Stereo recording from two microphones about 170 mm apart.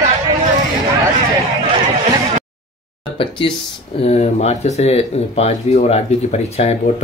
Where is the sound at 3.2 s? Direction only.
30° left (ahead or behind).